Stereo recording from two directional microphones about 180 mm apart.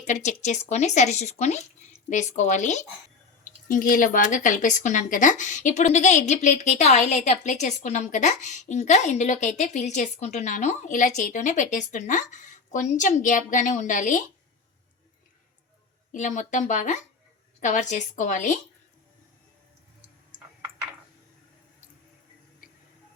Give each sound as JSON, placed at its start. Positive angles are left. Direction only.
{"t": 0.0, "sound": "speech", "side_deg": 40}
{"t": 16.1, "sound": "speech", "side_deg": 40}